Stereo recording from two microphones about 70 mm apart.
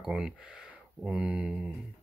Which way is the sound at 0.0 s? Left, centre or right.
Centre.